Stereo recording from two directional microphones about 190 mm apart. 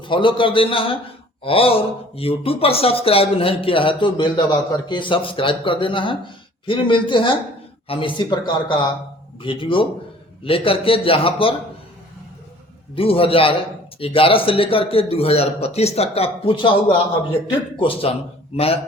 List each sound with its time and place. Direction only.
0.0 s a man's voice: 25° left (ahead or behind)
13.0 s a man's voice: 30° left (ahead or behind)